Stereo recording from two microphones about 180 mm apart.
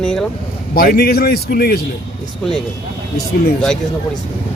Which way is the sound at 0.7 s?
55° left (ahead or behind).